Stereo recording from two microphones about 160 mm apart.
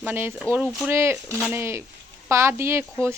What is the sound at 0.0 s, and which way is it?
Speech, 15° right (ahead or behind).